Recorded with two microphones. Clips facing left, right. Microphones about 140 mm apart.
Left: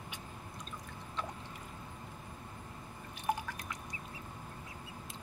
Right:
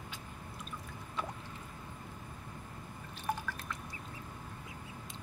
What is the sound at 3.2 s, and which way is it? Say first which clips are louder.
Drip: left 2 dB; 15° left (ahead or behind).